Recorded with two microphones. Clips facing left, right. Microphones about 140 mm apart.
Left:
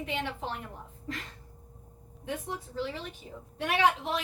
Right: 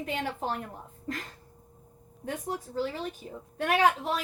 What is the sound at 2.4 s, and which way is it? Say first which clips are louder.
A woman's voice: right 3 dB; 40° right (ahead or behind).